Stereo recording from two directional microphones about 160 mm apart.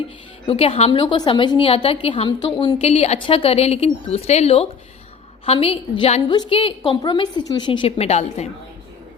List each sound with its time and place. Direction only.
0.4 s a woman's voice: 35° left (ahead or behind)
6.2 s a woman's voice: 25° left (ahead or behind); by 8.4 s 40° left (ahead or behind)